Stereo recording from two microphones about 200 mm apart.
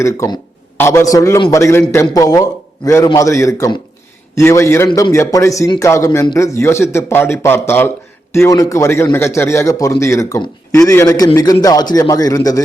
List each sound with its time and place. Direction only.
0.0 s a man's voice: 15° left (ahead or behind)